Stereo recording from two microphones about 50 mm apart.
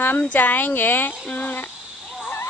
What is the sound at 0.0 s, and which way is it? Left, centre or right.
A woman's voice, left.